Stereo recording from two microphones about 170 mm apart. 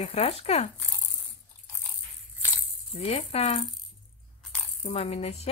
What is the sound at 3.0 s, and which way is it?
Speech, 35° left (ahead or behind).